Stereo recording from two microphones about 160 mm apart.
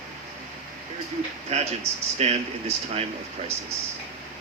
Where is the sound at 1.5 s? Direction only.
45° right (ahead or behind).